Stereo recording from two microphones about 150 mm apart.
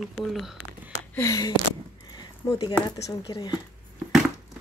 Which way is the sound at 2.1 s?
25° left (ahead or behind).